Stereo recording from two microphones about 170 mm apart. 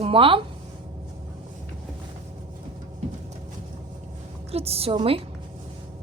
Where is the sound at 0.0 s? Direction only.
30° right (ahead or behind).